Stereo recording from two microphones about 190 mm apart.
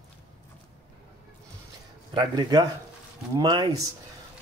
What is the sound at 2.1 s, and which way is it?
Speech, 20° right (ahead or behind).